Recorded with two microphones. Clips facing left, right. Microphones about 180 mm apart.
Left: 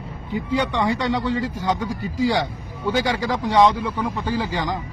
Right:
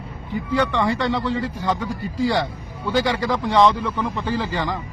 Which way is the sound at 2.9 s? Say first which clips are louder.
Right 3 dB; 15° left (ahead or behind).